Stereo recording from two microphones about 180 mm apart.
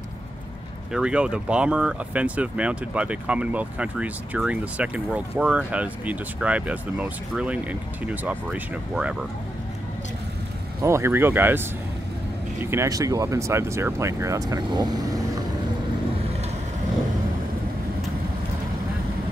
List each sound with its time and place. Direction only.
0.9 s speech: 5° right (ahead or behind)
10.8 s speech: 15° right (ahead or behind)
12.6 s speech: 15° right (ahead or behind)